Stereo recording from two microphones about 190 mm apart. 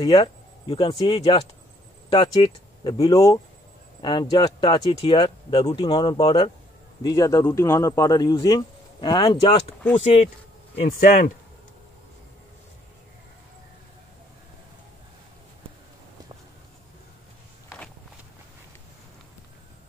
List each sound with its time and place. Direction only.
0.0 s a man's voice: 30° left (ahead or behind)
11.0 s speech: 45° left (ahead or behind)